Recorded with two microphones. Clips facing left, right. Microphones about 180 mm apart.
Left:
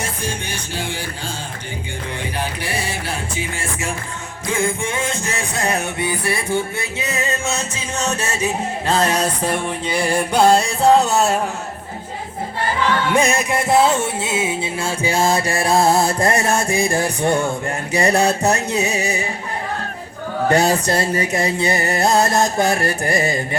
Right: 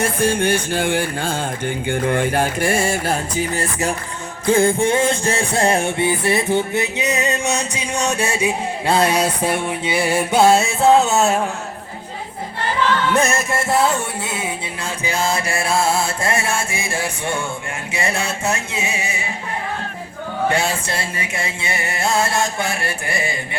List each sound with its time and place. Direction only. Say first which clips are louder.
0.0 s music: right 9 dB; 55° right (ahead or behind); by 11.3 s centre (ahead or behind)
13.1 s music: left 1 dB; 15° left (ahead or behind)
15.0 s music: left 3 dB; 35° left (ahead or behind)
20.5 s music: left 9 dB; 40° left (ahead or behind)